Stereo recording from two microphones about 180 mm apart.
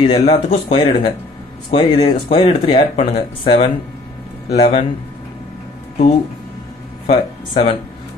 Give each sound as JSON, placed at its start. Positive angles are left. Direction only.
{"t": 0.0, "sound": "speech", "side_deg": 30}
{"t": 7.1, "sound": "speech", "side_deg": 30}